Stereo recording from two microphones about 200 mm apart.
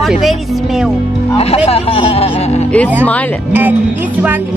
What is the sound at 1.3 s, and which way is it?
A woman's voice, 30° left (ahead or behind).